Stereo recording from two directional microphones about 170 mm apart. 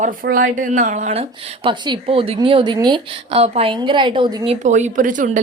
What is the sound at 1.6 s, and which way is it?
A woman's voice, 30° right (ahead or behind).